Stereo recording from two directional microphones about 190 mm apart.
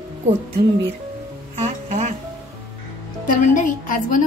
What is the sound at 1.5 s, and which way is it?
Music, 35° right (ahead or behind).